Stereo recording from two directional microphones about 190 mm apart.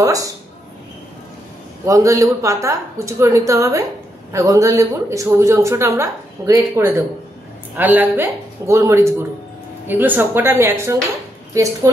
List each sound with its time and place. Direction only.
0.0 s a woman's voice: 20° right (ahead or behind)
1.9 s a woman's voice: 15° right (ahead or behind)